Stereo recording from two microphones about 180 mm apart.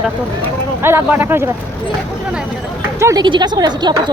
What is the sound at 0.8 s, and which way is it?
Speech, 10° right (ahead or behind).